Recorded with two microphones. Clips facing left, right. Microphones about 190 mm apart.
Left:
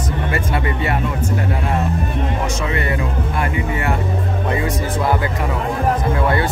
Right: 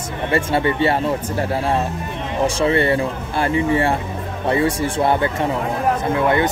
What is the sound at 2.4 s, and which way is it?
Speech, 30° right (ahead or behind).